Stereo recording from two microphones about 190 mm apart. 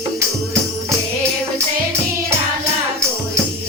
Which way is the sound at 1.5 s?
15° right (ahead or behind).